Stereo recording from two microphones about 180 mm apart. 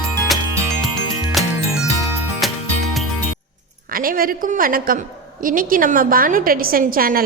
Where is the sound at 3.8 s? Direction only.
50° right (ahead or behind).